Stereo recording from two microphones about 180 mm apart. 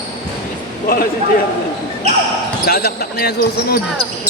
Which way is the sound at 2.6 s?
60° left (ahead or behind).